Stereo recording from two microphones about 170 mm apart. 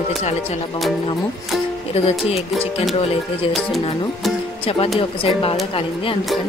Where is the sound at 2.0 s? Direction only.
35° left (ahead or behind).